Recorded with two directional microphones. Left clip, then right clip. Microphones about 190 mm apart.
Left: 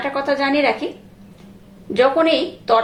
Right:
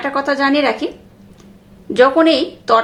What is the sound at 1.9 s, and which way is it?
Speech, 25° right (ahead or behind).